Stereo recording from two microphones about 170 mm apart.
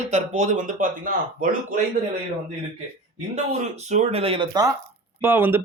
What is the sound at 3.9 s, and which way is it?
Speech, 40° right (ahead or behind).